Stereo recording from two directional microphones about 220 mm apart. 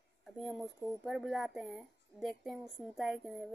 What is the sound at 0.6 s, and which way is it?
Speech, 15° right (ahead or behind).